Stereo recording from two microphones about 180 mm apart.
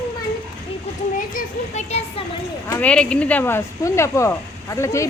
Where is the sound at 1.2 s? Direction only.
45° left (ahead or behind).